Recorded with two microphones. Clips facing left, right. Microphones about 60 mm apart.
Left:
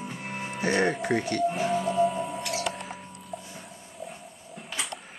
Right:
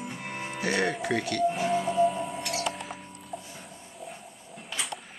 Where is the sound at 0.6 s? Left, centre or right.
Left.